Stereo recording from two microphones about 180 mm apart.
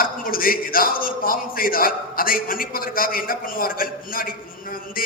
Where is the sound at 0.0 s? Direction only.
50° left (ahead or behind).